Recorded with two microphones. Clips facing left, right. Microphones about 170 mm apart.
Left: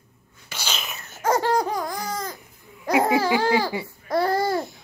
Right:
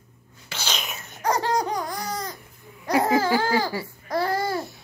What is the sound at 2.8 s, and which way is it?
Babbling, 20° left (ahead or behind).